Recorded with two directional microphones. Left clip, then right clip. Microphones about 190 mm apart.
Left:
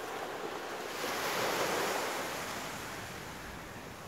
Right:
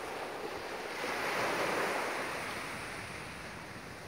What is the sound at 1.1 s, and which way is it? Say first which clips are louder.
Waves: even; 50° left (ahead or behind).